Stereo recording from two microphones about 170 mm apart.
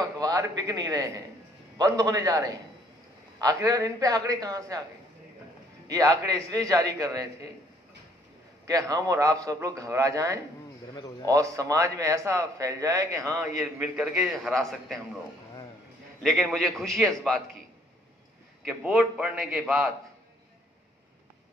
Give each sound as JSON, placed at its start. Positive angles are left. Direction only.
{"t": 0.0, "sound": "a man's voice", "side_deg": -20}
{"t": 3.6, "sound": "a man's voice", "side_deg": -20}
{"t": 5.9, "sound": "a man's voice", "side_deg": -20}
{"t": 8.6, "sound": "a man's voice", "side_deg": -20}
{"t": 13.6, "sound": "a man's voice", "side_deg": 0}
{"t": 16.2, "sound": "a man's voice", "side_deg": 0}
{"t": 18.7, "sound": "a man's voice", "side_deg": -5}